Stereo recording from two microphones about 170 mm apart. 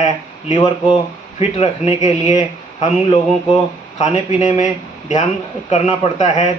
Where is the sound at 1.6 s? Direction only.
40° left (ahead or behind).